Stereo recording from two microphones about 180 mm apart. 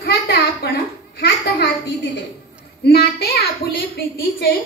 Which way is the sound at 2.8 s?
65° left (ahead or behind).